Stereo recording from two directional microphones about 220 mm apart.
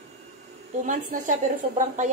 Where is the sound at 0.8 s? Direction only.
35° right (ahead or behind).